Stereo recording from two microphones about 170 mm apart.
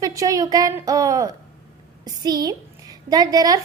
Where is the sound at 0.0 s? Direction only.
20° right (ahead or behind).